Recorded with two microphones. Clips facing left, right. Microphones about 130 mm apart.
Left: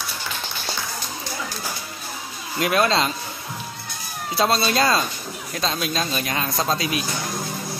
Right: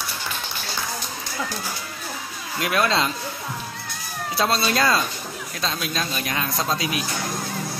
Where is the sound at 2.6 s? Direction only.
25° left (ahead or behind).